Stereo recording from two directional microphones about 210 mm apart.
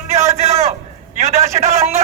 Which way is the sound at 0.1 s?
30° right (ahead or behind).